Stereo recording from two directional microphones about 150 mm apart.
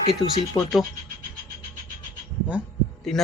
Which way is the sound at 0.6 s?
25° left (ahead or behind).